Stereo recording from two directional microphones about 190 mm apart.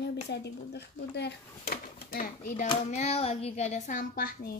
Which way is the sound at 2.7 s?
35° left (ahead or behind).